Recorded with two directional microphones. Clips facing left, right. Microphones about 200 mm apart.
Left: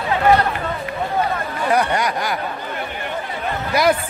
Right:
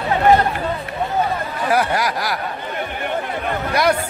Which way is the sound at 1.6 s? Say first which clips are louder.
Even; 5° right (ahead or behind).